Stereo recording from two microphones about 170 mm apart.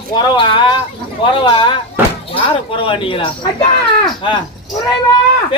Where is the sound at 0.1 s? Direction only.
30° left (ahead or behind).